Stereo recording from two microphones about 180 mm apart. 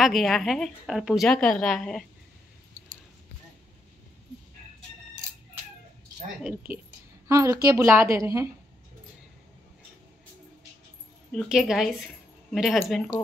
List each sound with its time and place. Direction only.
0.0 s a woman's voice: centre (ahead or behind)
7.2 s a woman's voice: 15° right (ahead or behind)
11.3 s a woman's voice: 5° right (ahead or behind)